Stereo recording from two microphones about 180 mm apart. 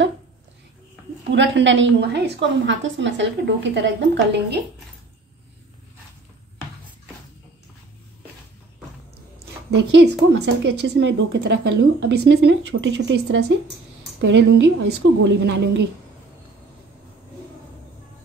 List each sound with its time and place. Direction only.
1.3 s speech: 90° right; by 4.6 s 75° right (ahead or behind)
9.8 s a woman's voice: 80° right